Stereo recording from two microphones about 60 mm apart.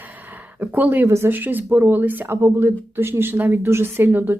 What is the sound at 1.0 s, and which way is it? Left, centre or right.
Speech, right.